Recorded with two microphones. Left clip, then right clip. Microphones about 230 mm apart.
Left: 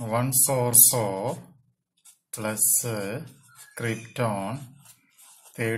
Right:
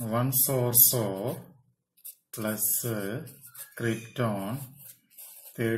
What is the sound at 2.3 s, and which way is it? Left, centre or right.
Speech, left.